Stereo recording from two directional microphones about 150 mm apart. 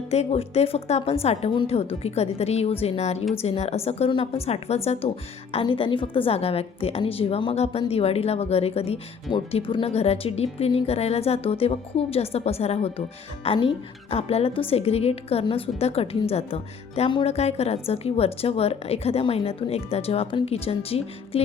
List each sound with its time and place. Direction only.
0.1 s a woman's voice: 45° left (ahead or behind)